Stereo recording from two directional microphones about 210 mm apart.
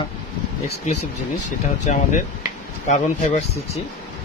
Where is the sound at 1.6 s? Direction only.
35° left (ahead or behind).